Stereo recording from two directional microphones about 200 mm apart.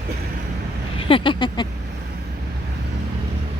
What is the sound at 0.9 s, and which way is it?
Speech, 25° left (ahead or behind).